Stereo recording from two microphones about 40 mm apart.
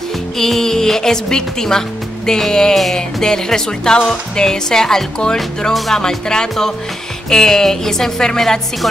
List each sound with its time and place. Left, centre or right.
0.4 s speech: centre
5.7 s speech: centre